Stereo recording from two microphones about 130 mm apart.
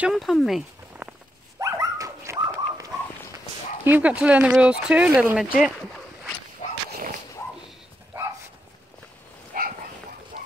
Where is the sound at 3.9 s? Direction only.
10° right (ahead or behind).